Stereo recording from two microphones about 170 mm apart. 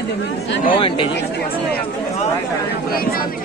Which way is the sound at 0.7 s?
30° left (ahead or behind).